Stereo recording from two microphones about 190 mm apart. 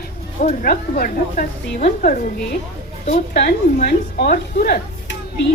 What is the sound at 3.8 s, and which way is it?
Speech, 55° left (ahead or behind).